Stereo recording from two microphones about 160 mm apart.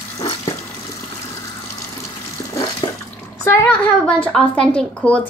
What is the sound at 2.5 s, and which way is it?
Bathtub, 25° left (ahead or behind).